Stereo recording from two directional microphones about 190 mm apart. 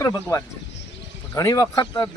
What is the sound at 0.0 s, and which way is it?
Speech, 15° left (ahead or behind).